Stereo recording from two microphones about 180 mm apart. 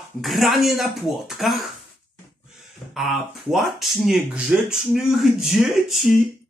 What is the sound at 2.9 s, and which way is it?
Throat clearing, centre (ahead or behind).